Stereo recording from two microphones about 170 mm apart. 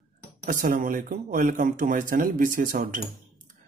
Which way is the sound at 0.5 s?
55° right (ahead or behind).